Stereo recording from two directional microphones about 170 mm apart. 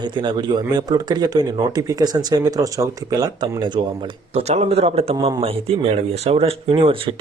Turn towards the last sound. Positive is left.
turn(degrees=-35)  # may be behind; listen again after turning